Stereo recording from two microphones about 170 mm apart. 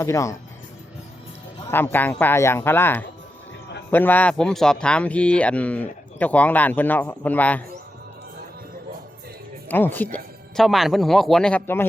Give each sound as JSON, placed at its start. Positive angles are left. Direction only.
{"t": 0.0, "sound": "speech", "side_deg": 15}
{"t": 1.7, "sound": "speech", "side_deg": 10}
{"t": 9.6, "sound": "speech", "side_deg": 10}
{"t": 10.6, "sound": "speech", "side_deg": 0}